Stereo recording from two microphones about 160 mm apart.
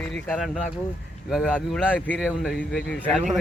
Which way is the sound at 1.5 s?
10° left (ahead or behind).